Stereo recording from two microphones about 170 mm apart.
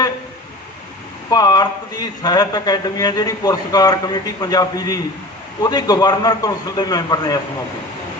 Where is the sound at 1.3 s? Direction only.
25° left (ahead or behind).